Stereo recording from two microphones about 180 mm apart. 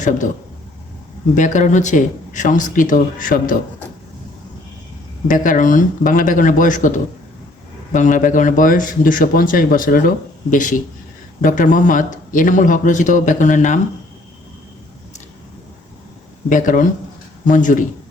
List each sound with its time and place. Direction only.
1.4 s a man's voice: 45° left (ahead or behind)
5.3 s a man's voice: 45° left (ahead or behind)
16.5 s a man's voice: 45° left (ahead or behind)